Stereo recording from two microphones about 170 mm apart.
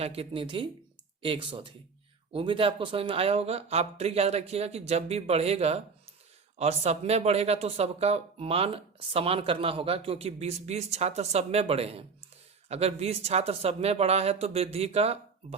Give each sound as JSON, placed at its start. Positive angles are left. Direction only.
{"t": 0.0, "sound": "speech", "side_deg": -35}